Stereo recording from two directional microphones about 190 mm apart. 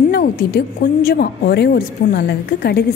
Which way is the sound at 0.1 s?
50° left (ahead or behind).